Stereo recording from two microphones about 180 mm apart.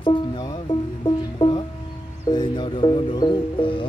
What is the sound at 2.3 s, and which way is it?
Speech, 25° left (ahead or behind).